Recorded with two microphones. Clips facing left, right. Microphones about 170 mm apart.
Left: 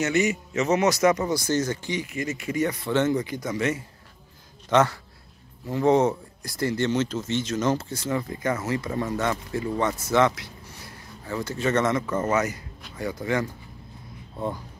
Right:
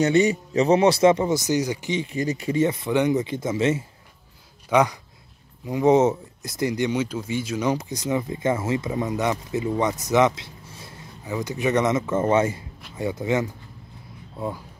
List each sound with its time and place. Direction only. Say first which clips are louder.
0.0 s speech: right 5 dB; 30° right (ahead or behind)
4.6 s speech: right 1 dB; 10° right (ahead or behind)
14.3 s speech: even; 5° right (ahead or behind)